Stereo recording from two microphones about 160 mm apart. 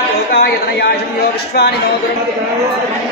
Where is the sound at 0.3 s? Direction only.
85° left.